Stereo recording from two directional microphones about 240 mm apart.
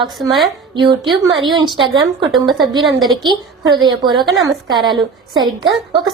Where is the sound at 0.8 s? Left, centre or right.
Centre.